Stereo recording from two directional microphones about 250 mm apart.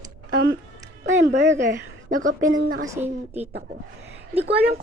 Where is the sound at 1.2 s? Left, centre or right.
Right.